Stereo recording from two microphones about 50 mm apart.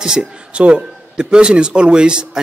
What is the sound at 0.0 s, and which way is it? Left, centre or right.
A man's voice, centre.